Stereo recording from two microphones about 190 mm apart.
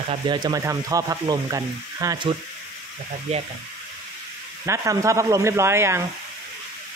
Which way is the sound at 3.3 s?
35° right (ahead or behind).